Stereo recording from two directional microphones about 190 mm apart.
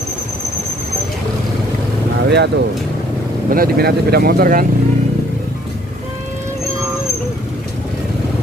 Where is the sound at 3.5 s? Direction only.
50° right (ahead or behind).